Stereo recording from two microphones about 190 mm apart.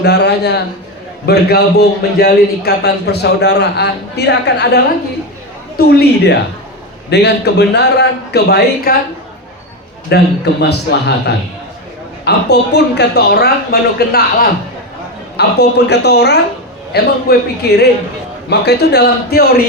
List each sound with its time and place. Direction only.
0.0 s a man's voice: 60° left (ahead or behind)
10.1 s a man's voice: 60° left (ahead or behind)
15.4 s a man's voice: 60° left (ahead or behind)